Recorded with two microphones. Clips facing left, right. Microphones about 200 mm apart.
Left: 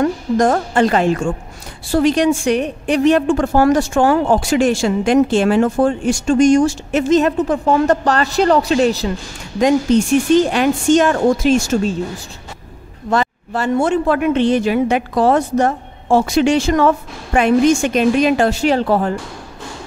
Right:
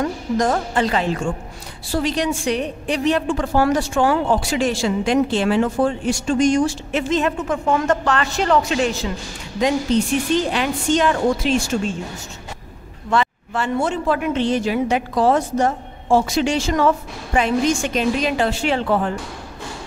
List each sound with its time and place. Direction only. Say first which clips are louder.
0.0 s a woman's voice: left 5 dB; 50° left (ahead or behind)
10.5 s a woman's voice: left 6 dB; 45° left (ahead or behind)
13.1 s speech: left 2 dB; 40° left (ahead or behind)